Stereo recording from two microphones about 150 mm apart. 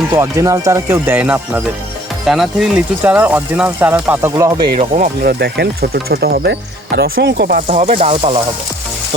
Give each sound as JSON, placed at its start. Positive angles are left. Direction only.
{"t": 0.1, "sound": "speech", "side_deg": -20}
{"t": 4.8, "sound": "speech", "side_deg": -60}
{"t": 7.7, "sound": "speech", "side_deg": -50}